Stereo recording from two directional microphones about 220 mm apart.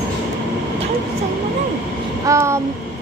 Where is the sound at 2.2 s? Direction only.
10° right (ahead or behind).